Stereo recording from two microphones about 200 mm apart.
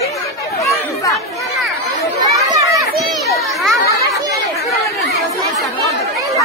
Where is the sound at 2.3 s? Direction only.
15° right (ahead or behind).